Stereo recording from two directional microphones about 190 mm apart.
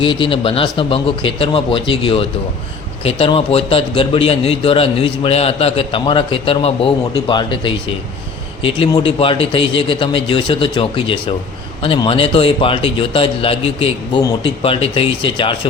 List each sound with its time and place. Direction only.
0.0 s a man's voice: 25° left (ahead or behind)